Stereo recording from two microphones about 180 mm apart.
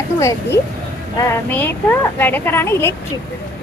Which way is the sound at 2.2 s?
10° left (ahead or behind).